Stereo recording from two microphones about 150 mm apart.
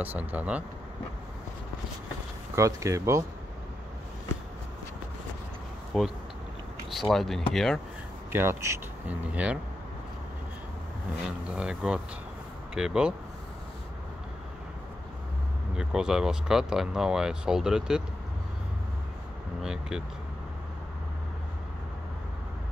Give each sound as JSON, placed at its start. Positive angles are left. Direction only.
{"t": 0.0, "sound": "speech", "side_deg": -10}
{"t": 2.5, "sound": "speech", "side_deg": -20}
{"t": 5.9, "sound": "speech", "side_deg": 0}
{"t": 8.3, "sound": "speech", "side_deg": -15}
{"t": 11.2, "sound": "speech", "side_deg": -5}
{"t": 15.7, "sound": "speech", "side_deg": -5}
{"t": 19.6, "sound": "vehicle", "side_deg": -5}